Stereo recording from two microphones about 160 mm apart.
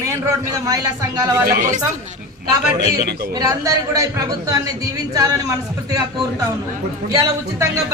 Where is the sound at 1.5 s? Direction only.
55° right (ahead or behind).